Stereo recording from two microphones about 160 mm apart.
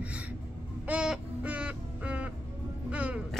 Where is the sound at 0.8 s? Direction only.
5° right (ahead or behind).